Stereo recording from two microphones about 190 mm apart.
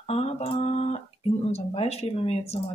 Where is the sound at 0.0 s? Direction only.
35° left (ahead or behind).